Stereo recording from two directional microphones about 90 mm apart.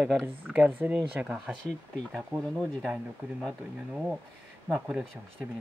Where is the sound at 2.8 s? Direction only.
10° right (ahead or behind).